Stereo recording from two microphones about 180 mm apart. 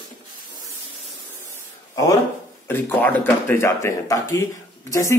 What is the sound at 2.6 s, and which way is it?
Speech, 10° left (ahead or behind).